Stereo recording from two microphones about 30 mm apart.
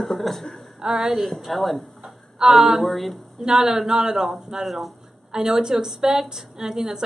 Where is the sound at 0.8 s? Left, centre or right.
Centre.